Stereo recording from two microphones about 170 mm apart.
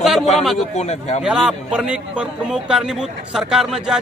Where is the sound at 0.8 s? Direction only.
40° left (ahead or behind).